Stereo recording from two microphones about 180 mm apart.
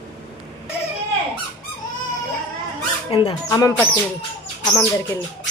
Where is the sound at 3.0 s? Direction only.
30° left (ahead or behind).